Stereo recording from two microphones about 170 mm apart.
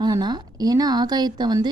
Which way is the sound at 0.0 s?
25° right (ahead or behind).